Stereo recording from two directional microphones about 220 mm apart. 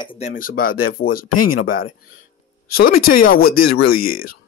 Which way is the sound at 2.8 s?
40° left (ahead or behind).